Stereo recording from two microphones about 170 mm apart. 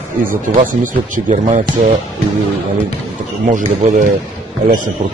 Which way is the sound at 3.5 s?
50° right (ahead or behind).